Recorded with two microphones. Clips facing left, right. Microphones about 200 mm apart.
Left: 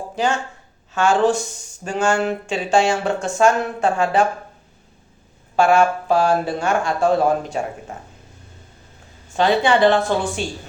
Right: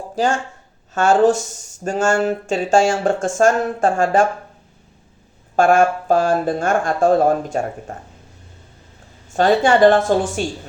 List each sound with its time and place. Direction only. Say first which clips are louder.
0.9 s speech: right 3 dB; 40° right (ahead or behind)
5.5 s speech: right 2 dB; 50° right (ahead or behind)
9.3 s speech: right 2 dB; 45° right (ahead or behind)